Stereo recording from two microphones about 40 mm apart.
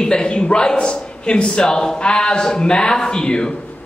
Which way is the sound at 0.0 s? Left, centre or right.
Left.